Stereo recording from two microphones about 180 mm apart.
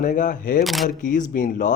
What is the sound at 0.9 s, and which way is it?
Speech, 45° left (ahead or behind).